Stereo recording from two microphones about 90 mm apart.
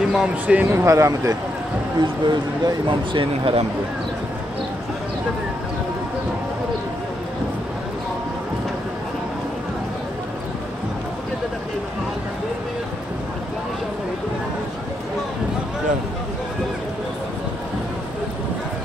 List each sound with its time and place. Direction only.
0.1 s speech: 5° right (ahead or behind)
0.7 s speech: 35° right (ahead or behind)
2.0 s speech: 55° right (ahead or behind); by 3.6 s 80° right